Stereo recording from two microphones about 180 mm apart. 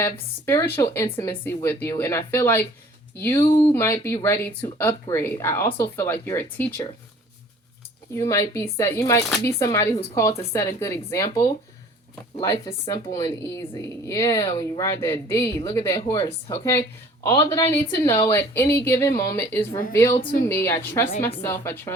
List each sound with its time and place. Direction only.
0.0 s a woman's voice: 15° left (ahead or behind)
8.1 s a woman's voice: 15° left (ahead or behind)
12.5 s a woman's voice: 30° left (ahead or behind); by 21.9 s 15° left (ahead or behind)